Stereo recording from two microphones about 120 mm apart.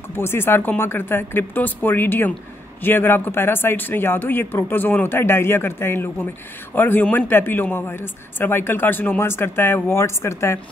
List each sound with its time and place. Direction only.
0.1 s a man's voice: 20° left (ahead or behind)